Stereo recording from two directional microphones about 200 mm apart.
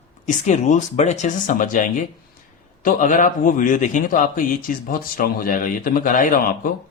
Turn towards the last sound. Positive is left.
turn(degrees=40)  # may be behind; listen again after turning